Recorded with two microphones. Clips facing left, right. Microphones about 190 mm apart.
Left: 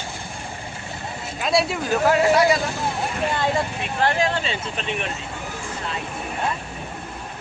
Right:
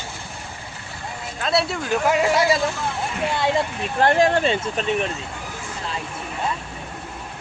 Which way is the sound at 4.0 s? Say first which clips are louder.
Right 5 dB; 50° right (ahead or behind).